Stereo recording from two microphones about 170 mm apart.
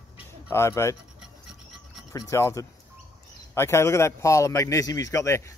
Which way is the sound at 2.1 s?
20° left (ahead or behind).